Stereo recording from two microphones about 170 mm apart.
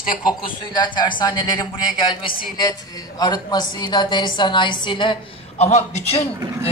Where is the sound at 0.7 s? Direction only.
25° left (ahead or behind).